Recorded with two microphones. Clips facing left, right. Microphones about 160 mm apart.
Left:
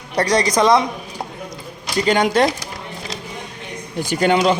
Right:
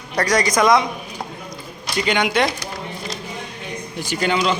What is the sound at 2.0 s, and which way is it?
Speech, 40° left (ahead or behind).